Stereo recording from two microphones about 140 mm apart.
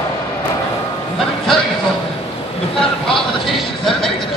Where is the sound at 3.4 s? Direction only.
Centre (ahead or behind).